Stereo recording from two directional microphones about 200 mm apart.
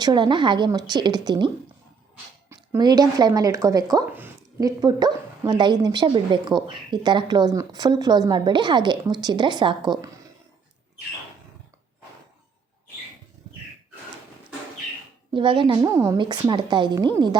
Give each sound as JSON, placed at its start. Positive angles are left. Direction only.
{"t": 0.0, "sound": "speech", "side_deg": -20}
{"t": 2.5, "sound": "speech", "side_deg": -20}
{"t": 15.3, "sound": "speech", "side_deg": -25}